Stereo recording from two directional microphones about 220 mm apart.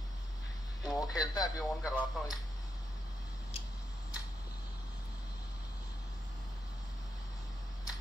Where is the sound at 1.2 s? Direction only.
15° left (ahead or behind).